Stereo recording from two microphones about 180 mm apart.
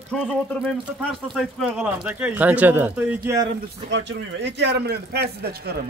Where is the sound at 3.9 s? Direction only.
75° right (ahead or behind).